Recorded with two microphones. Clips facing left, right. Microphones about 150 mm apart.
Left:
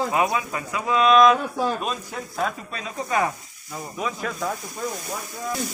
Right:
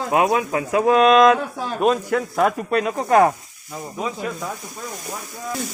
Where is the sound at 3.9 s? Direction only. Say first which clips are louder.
Right 2 dB; 25° right (ahead or behind).